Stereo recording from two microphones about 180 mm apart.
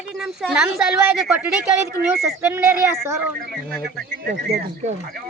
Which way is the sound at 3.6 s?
Centre (ahead or behind).